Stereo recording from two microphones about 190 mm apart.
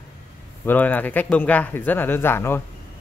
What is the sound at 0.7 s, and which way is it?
A man's voice, 10° left (ahead or behind).